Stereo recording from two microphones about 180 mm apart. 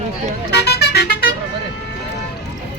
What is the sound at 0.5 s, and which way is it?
Vehicle, 65° left (ahead or behind).